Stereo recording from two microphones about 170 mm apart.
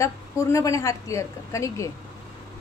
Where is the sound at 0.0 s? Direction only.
20° left (ahead or behind).